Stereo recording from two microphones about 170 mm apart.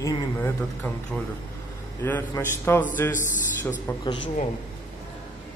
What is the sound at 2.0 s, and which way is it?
Speech, 10° left (ahead or behind).